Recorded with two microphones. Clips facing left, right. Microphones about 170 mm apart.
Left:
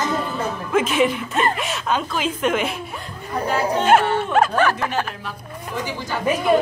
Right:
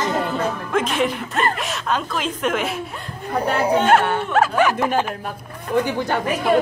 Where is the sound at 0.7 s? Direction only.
5° left (ahead or behind).